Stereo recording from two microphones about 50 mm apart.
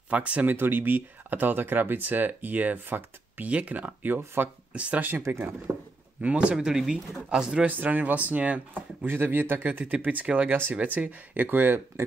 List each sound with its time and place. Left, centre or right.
0.1 s speech: right
0.5 s speech: right
5.3 s speech: right
5.7 s a sound: right
6.2 s speech: right
7.6 s speech: right
9.0 s speech: right
9.8 s speech: right